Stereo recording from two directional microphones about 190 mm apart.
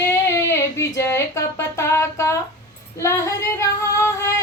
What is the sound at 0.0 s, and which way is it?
Music, 15° left (ahead or behind).